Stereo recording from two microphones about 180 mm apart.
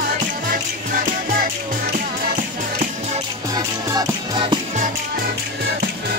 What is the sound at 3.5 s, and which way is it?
Music, 20° right (ahead or behind).